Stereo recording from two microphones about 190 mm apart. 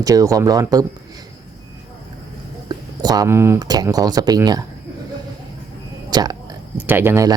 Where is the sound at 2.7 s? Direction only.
20° right (ahead or behind).